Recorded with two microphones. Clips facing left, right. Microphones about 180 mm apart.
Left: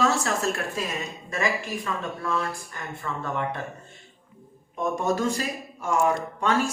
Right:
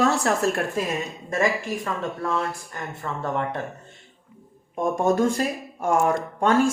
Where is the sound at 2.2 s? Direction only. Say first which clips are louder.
Right 2 dB; 25° right (ahead or behind).